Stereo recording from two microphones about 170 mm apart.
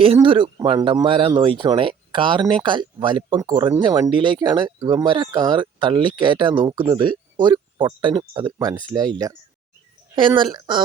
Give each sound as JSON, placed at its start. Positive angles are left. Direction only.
{"t": 0.0, "sound": "speech", "side_deg": -30}